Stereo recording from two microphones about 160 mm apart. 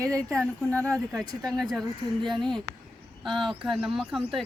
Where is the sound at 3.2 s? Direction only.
Centre (ahead or behind).